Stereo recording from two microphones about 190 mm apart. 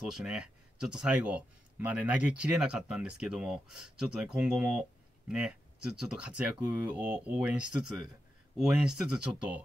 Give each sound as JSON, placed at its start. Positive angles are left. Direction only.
{"t": 0.0, "sound": "speech", "side_deg": -5}